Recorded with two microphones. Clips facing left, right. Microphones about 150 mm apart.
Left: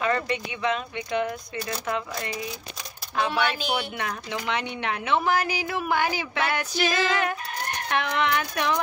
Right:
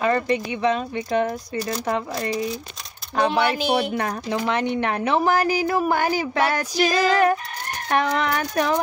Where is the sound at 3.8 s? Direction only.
40° right (ahead or behind).